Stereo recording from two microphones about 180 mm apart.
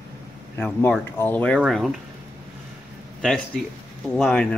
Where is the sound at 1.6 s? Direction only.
Centre (ahead or behind).